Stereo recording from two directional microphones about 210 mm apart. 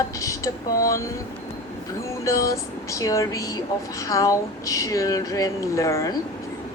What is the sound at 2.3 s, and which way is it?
Speech, 15° left (ahead or behind).